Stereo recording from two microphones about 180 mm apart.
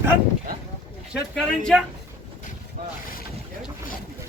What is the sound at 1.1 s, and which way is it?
Speech, centre (ahead or behind).